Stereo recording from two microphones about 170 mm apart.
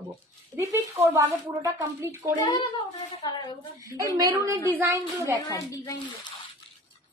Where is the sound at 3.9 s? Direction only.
20° right (ahead or behind).